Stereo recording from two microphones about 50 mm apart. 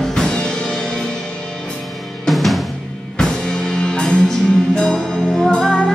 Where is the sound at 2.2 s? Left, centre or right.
Centre.